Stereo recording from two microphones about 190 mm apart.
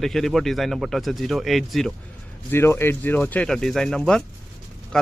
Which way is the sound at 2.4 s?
10° left (ahead or behind).